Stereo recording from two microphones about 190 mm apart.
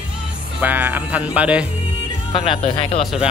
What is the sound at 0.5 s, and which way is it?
Speech, 10° right (ahead or behind).